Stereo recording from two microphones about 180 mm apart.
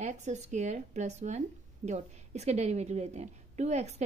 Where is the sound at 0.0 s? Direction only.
40° right (ahead or behind).